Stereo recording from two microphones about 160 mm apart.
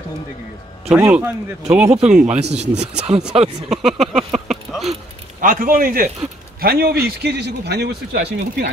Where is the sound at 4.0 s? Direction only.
45° right (ahead or behind).